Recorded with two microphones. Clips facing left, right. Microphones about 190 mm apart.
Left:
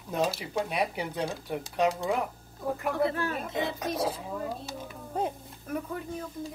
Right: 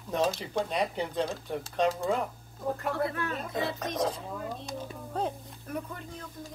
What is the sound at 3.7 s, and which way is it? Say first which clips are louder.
A child's voice: even; 5° left (ahead or behind).